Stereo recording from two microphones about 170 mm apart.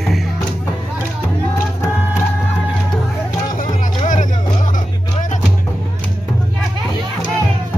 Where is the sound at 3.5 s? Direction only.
50° left (ahead or behind).